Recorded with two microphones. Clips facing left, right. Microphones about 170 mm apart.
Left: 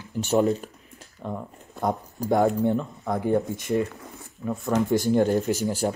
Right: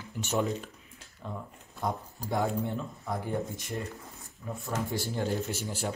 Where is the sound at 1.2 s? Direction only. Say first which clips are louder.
Left 7 dB; 60° left (ahead or behind).